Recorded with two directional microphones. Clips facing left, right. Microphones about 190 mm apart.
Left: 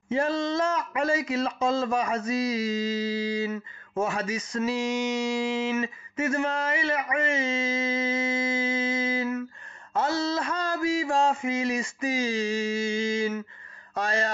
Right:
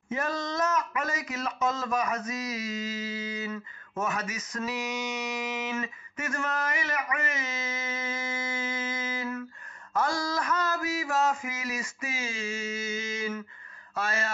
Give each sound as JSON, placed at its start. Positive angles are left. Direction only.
{"t": 0.1, "sound": "speech", "side_deg": 30}